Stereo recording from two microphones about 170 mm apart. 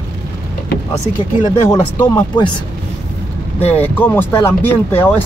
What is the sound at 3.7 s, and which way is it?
Speech, 10° left (ahead or behind).